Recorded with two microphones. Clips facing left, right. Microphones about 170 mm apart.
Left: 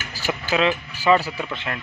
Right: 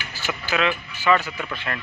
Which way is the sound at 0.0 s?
35° left (ahead or behind).